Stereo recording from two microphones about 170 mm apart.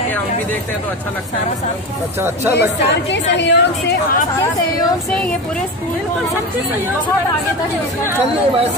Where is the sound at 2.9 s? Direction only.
90° left.